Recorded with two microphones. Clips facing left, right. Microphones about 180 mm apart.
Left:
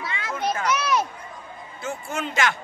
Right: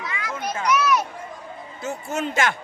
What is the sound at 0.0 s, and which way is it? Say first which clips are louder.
Children playing: left 2 dB; 30° left (ahead or behind).